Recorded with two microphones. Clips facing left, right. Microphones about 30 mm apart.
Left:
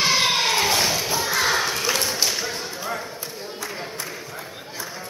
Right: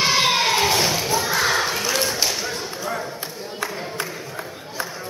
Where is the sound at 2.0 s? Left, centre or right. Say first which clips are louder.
Right 1 dB; centre.